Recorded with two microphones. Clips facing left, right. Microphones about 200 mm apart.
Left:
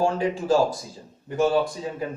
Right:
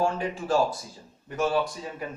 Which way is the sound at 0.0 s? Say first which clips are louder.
Left 4 dB; 30° left (ahead or behind).